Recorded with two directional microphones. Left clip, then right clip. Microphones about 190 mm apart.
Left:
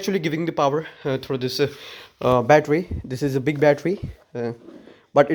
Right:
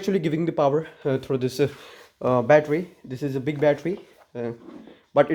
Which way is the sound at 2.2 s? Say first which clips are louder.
Left 2 dB; 25° left (ahead or behind).